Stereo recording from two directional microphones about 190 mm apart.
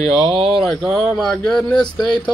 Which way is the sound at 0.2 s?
25° right (ahead or behind).